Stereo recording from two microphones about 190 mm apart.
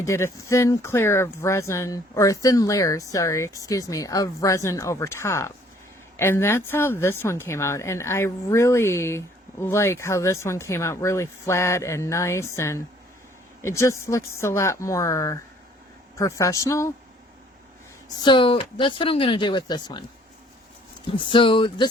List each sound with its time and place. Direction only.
0.0 s a woman's voice: 15° left (ahead or behind)
18.2 s speech: 25° left (ahead or behind)
21.1 s speech: 25° left (ahead or behind)